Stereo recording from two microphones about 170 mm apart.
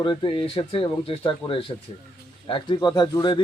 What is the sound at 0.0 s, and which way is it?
A man's voice, 30° left (ahead or behind).